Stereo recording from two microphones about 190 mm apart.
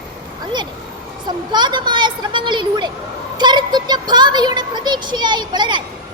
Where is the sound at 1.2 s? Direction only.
25° right (ahead or behind).